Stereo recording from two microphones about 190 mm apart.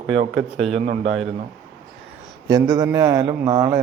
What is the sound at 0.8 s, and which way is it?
Speech, 35° right (ahead or behind).